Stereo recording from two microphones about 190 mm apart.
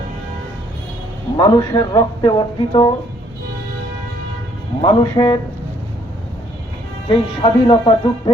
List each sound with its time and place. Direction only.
1.4 s speech: 25° left (ahead or behind)
4.8 s speech: 25° left (ahead or behind)
7.1 s speech: 25° left (ahead or behind)